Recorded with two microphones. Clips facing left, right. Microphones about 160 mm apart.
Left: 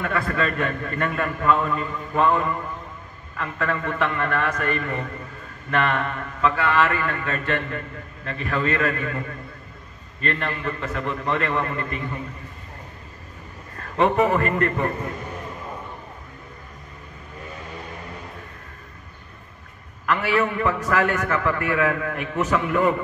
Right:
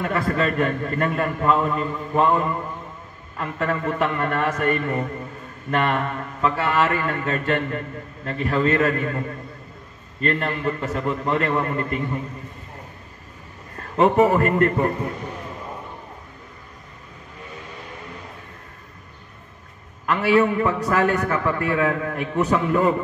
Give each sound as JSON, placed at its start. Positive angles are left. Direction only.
{"t": 0.0, "sound": "a man's voice", "side_deg": -25}
{"t": 10.3, "sound": "a man's voice", "side_deg": -25}
{"t": 13.9, "sound": "a man's voice", "side_deg": -25}
{"t": 20.2, "sound": "a man's voice", "side_deg": -20}